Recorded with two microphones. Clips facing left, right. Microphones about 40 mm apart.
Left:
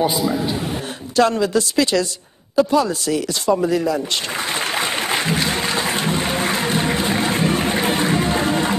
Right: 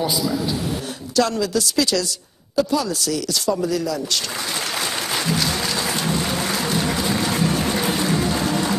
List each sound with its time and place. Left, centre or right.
0.0 s a man's voice: left
4.7 s music: left